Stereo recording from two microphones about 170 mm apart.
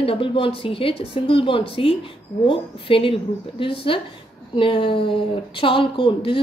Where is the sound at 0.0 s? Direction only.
30° left (ahead or behind).